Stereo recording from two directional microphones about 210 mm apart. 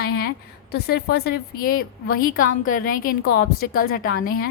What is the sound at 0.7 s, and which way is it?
A woman's voice, 50° left (ahead or behind).